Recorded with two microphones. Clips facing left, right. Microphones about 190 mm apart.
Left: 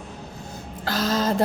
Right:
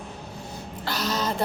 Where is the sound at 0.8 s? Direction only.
90° left.